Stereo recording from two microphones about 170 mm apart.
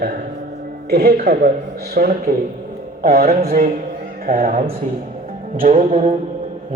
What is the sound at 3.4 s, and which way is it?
Speech, 60° right (ahead or behind).